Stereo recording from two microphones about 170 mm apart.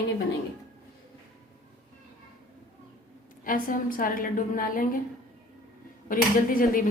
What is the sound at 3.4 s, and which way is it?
A woman's voice, 55° left (ahead or behind).